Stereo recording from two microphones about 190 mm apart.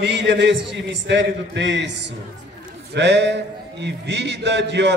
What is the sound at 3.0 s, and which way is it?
A man's voice, 65° right (ahead or behind).